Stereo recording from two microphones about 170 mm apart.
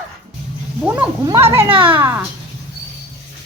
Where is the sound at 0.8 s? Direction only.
10° right (ahead or behind).